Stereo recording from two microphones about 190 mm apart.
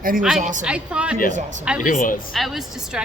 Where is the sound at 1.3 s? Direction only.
40° right (ahead or behind).